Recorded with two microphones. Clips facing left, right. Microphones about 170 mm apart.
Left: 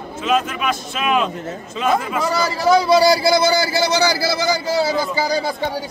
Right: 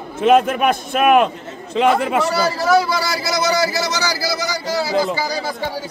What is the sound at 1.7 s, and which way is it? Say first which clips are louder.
Speech: right 4 dB; 70° right (ahead or behind).